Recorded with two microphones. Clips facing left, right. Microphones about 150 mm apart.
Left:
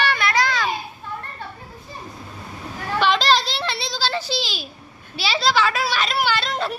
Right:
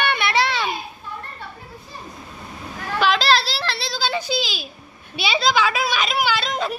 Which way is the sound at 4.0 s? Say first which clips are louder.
Right 2 dB; 15° right (ahead or behind).